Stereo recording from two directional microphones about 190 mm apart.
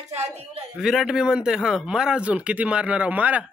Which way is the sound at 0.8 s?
Centre (ahead or behind).